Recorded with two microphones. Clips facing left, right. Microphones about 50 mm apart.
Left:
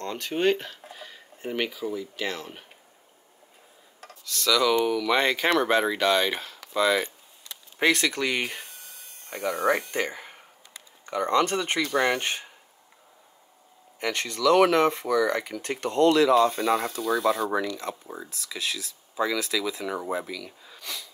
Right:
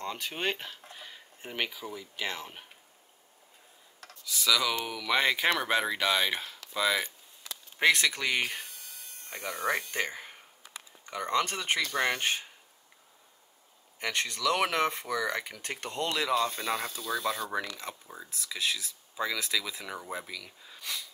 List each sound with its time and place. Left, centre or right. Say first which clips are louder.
0.0 s speech: left 8 dB; centre
0.8 s a sound: left 4 dB; centre
2.1 s speech: left 4 dB; centre
4.0 s computer keyboard: left 4 dB; centre
4.3 s speech: left 6 dB; centre
9.3 s speech: left 7 dB; left
9.8 s speech: left 4 dB; centre
13.9 s speech: left 3 dB; centre
18.0 s speech: left 7 dB; centre
18.3 s speech: right 1 dB; centre